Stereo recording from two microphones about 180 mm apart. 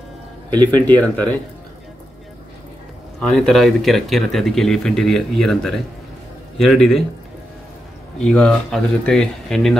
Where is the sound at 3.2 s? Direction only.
Centre (ahead or behind).